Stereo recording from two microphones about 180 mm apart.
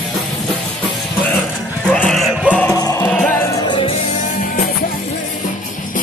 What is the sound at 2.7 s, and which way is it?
Music, 20° left (ahead or behind).